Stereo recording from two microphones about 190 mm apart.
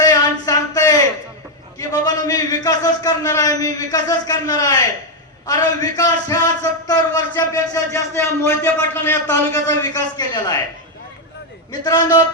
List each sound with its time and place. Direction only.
0.0 s a sound: 20° left (ahead or behind)
1.8 s a man's voice: 20° left (ahead or behind)
11.7 s a man's voice: 20° left (ahead or behind)